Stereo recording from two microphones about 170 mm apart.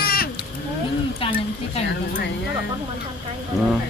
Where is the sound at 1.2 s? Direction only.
30° left (ahead or behind).